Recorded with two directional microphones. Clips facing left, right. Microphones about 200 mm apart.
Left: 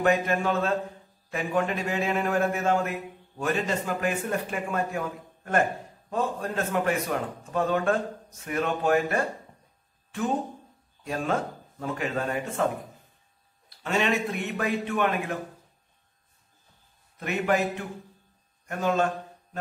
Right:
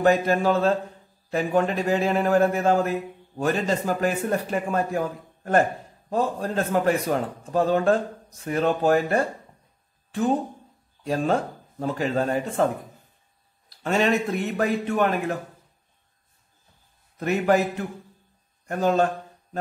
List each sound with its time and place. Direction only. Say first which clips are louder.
0.0 s a man's voice: right 4 dB; 35° right (ahead or behind)
11.8 s a man's voice: right 5 dB; 35° right (ahead or behind)
13.8 s a man's voice: right 4 dB; 40° right (ahead or behind)
17.2 s a man's voice: right 5 dB; 40° right (ahead or behind)